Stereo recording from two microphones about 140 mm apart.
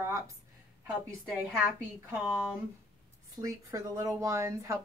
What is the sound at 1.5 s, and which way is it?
Speech, 15° right (ahead or behind).